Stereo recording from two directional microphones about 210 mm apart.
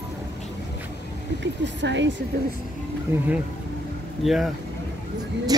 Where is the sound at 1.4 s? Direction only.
60° right (ahead or behind).